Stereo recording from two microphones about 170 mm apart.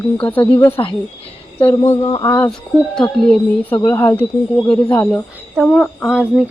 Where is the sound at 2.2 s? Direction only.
10° left (ahead or behind).